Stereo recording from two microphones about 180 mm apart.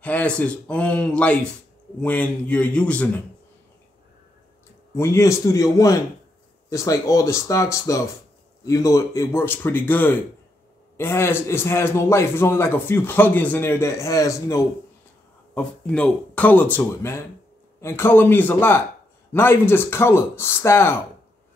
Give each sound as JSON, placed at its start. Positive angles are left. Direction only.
{"t": 0.0, "sound": "a man's voice", "side_deg": 10}
{"t": 4.9, "sound": "a man's voice", "side_deg": 15}
{"t": 15.5, "sound": "a man's voice", "side_deg": 5}